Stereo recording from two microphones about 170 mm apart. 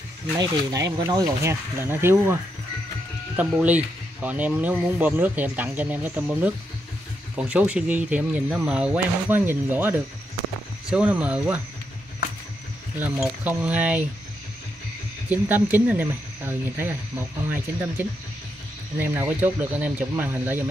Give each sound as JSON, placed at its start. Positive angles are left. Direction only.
{"t": 0.4, "sound": "speech", "side_deg": -20}
{"t": 3.3, "sound": "speech", "side_deg": -10}
{"t": 13.0, "sound": "speech", "side_deg": -10}
{"t": 15.2, "sound": "speech", "side_deg": -10}
{"t": 18.0, "sound": "speech", "side_deg": -10}